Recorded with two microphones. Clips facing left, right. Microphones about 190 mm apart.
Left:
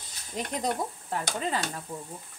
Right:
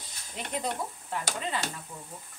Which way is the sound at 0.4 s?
40° left (ahead or behind).